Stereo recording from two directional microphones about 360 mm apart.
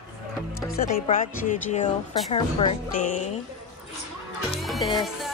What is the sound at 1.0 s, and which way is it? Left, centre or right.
Speech, left.